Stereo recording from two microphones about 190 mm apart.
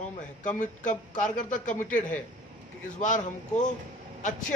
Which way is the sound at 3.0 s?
40° left (ahead or behind).